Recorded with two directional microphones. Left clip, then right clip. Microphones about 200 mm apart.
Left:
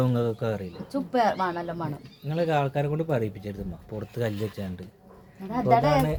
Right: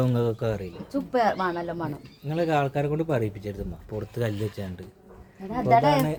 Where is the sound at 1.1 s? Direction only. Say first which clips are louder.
Even; 20° right (ahead or behind).